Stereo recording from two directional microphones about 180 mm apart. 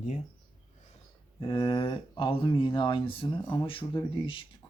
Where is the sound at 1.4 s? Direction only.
25° left (ahead or behind).